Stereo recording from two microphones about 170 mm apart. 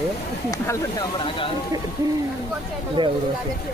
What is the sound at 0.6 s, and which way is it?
Speech, 15° left (ahead or behind).